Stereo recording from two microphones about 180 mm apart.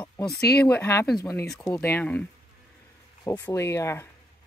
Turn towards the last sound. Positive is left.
turn(degrees=15)  # may be behind; listen again after turning